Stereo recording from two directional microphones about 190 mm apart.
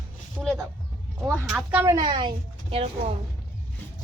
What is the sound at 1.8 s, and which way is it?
A woman's voice, 20° right (ahead or behind).